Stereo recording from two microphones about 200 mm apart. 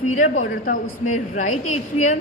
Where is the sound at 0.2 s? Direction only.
40° left (ahead or behind).